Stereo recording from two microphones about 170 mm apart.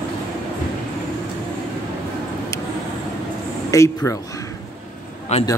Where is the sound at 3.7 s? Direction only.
20° left (ahead or behind).